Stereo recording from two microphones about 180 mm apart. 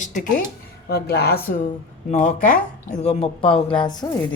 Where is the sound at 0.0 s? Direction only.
45° left (ahead or behind).